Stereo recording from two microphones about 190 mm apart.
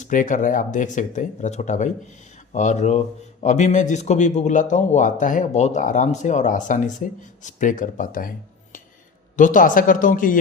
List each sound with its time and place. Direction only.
0.0 s a man's voice: 45° left (ahead or behind)
9.3 s speech: 45° left (ahead or behind)